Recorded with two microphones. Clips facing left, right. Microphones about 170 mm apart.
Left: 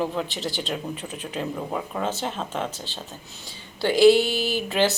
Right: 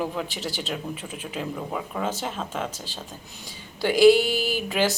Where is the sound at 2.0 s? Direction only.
10° right (ahead or behind).